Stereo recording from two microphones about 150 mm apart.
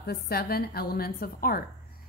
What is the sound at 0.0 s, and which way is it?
A woman's voice, 90° left.